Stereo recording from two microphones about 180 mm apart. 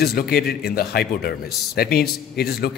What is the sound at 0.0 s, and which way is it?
A man's voice, 60° left (ahead or behind).